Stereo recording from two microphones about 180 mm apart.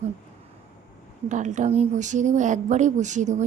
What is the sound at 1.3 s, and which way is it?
Speech, 45° right (ahead or behind).